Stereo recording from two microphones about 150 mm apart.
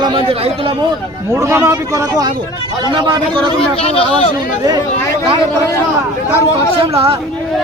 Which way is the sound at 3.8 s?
40° left (ahead or behind).